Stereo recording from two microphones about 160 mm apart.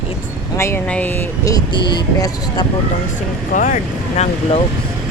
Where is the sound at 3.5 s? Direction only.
55° left (ahead or behind).